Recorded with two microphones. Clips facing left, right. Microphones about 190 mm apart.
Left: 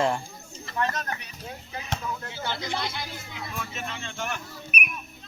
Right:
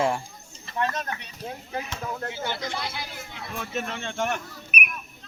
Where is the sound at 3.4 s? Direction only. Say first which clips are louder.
Right 5 dB; 60° right (ahead or behind).